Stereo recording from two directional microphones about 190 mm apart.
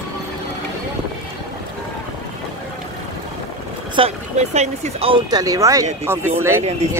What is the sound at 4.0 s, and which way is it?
Speech, 35° right (ahead or behind).